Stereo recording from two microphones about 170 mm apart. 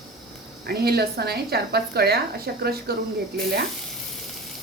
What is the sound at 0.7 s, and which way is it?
A woman's voice, 65° right (ahead or behind).